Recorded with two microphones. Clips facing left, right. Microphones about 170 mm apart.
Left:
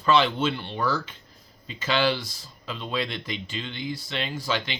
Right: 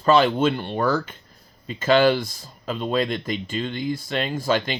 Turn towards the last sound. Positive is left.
turn(degrees=-50)  # may be behind; listen again after turning